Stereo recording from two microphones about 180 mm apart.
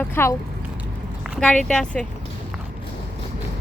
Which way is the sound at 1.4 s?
5° left (ahead or behind).